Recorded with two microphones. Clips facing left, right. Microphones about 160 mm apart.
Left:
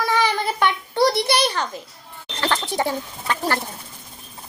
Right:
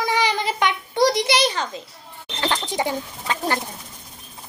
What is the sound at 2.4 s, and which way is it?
Bird, 15° right (ahead or behind).